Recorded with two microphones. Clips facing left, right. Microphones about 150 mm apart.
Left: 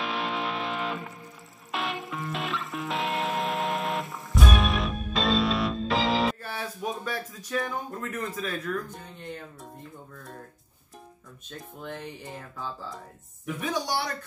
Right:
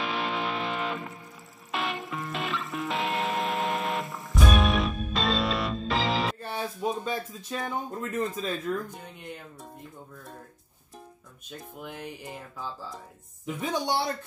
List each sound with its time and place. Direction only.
0.0 s music: centre (ahead or behind)
6.4 s speech: 25° right (ahead or behind)
11.8 s music: 10° right (ahead or behind)
13.5 s speech: 25° right (ahead or behind)